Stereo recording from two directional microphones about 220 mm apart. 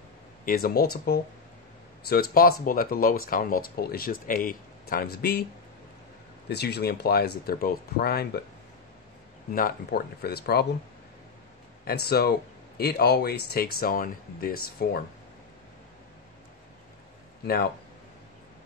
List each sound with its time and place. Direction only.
0.5 s speech: 45° left (ahead or behind)
6.5 s speech: 50° left (ahead or behind)
9.6 s speech: 40° left (ahead or behind)
11.8 s speech: 45° left (ahead or behind)
17.5 s speech: 45° left (ahead or behind)